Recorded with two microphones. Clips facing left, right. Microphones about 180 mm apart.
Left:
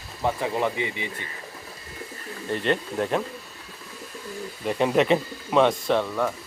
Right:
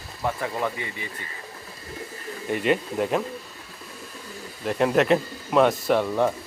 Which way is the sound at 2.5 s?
5° right (ahead or behind).